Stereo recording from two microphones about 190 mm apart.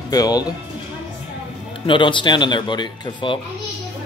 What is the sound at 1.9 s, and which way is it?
Speech, 25° left (ahead or behind).